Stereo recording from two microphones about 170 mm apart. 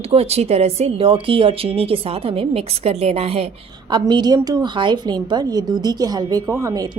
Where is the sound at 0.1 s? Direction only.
40° right (ahead or behind).